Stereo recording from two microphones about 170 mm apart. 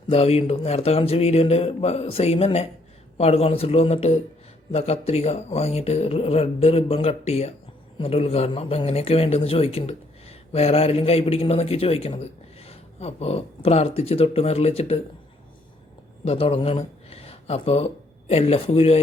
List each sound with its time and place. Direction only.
0.1 s speech: 35° left (ahead or behind)
16.2 s speech: 35° left (ahead or behind)